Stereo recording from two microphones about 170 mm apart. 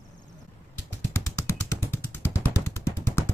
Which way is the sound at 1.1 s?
15° left (ahead or behind).